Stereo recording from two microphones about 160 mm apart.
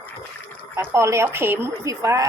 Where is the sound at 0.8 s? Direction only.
15° right (ahead or behind).